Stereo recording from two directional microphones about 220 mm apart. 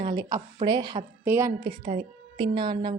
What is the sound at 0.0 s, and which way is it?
A woman's voice, 20° right (ahead or behind).